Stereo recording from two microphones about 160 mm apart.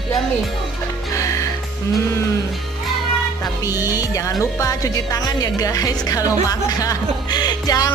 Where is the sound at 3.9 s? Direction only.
20° left (ahead or behind).